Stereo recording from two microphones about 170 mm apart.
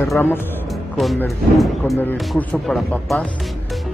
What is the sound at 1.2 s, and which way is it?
Speech, centre (ahead or behind).